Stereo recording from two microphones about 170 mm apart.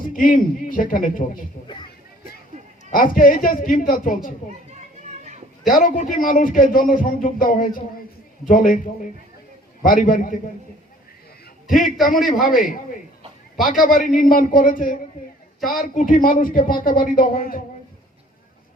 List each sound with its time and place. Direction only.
0.0 s a man's voice: 55° left (ahead or behind)
2.9 s a man's voice: 55° left (ahead or behind)
5.6 s a man's voice: 55° left (ahead or behind)
12.0 s a man's voice: 50° left (ahead or behind)
13.7 s a man's voice: 55° left (ahead or behind)